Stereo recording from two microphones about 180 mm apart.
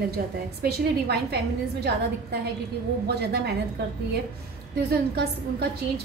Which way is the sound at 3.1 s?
65° right (ahead or behind).